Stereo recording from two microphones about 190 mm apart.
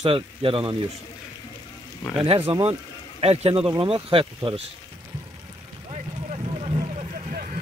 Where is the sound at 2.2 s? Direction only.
30° right (ahead or behind).